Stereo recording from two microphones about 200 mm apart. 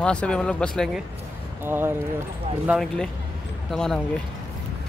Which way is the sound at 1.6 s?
10° right (ahead or behind).